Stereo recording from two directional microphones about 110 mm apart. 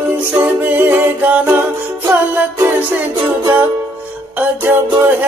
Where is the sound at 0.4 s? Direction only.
15° right (ahead or behind).